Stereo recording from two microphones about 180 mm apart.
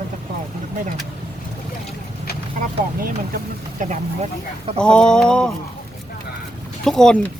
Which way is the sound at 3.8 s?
40° right (ahead or behind).